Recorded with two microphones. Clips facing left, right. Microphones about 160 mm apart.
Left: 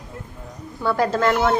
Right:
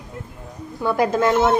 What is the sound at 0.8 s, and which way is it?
Speech, 15° right (ahead or behind).